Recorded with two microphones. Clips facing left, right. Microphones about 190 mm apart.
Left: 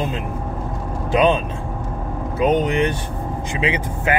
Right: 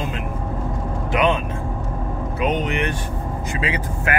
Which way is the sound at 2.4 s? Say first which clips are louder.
Left 5 dB; 30° left (ahead or behind).